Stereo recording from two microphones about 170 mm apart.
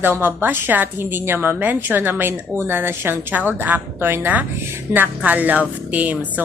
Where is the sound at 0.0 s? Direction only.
10° right (ahead or behind).